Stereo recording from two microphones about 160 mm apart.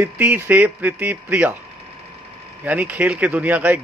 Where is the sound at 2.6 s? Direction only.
10° right (ahead or behind).